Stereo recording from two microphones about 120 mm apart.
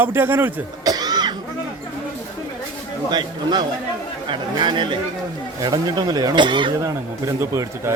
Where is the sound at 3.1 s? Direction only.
35° right (ahead or behind).